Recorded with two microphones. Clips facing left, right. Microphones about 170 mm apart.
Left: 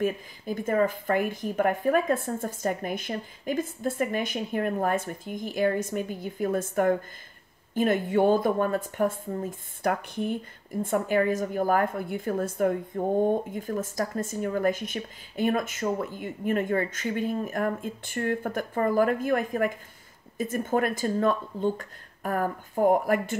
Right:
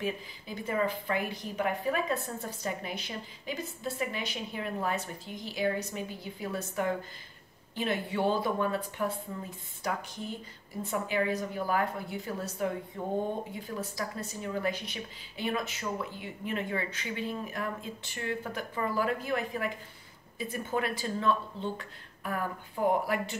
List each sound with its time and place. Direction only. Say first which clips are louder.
0.0 s a woman's voice: left 7 dB; 50° left (ahead or behind)